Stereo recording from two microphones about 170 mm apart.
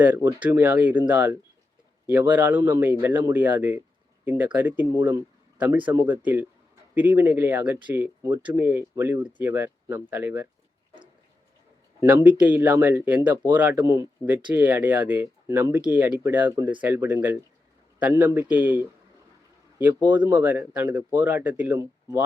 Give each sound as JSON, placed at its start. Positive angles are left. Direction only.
{"t": 0.0, "sound": "speech", "side_deg": -10}
{"t": 11.9, "sound": "speech", "side_deg": -10}
{"t": 19.9, "sound": "speech", "side_deg": -25}
{"t": 20.4, "sound": "speech", "side_deg": -10}